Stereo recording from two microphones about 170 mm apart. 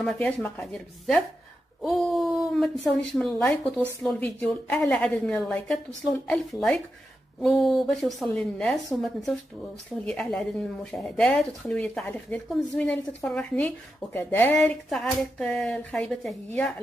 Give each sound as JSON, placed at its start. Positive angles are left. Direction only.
{"t": 0.0, "sound": "speech", "side_deg": 5}